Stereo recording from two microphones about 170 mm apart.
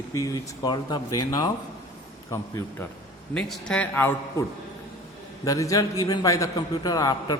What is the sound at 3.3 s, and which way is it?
Speech, 5° left (ahead or behind).